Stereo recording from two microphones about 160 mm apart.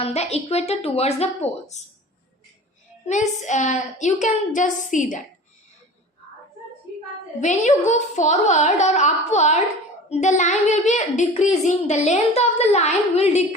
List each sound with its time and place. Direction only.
0.0 s a child's voice: 40° left (ahead or behind)
3.1 s a child's voice: 50° left (ahead or behind)
7.4 s a child's voice: 50° left (ahead or behind)